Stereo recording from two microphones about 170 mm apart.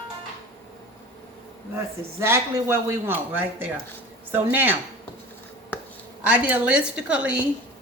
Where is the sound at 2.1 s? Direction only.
15° right (ahead or behind).